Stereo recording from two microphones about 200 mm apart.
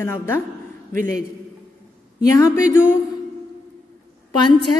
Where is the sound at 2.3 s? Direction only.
15° left (ahead or behind).